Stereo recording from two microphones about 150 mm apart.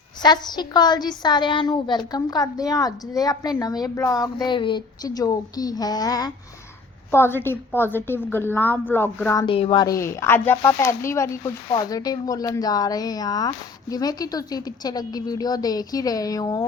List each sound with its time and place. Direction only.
0.2 s a woman's voice: 30° left (ahead or behind)
4.4 s a woman's voice: 30° left (ahead or behind); by 9.4 s 15° left (ahead or behind)
9.4 s a woman's voice: 35° left (ahead or behind)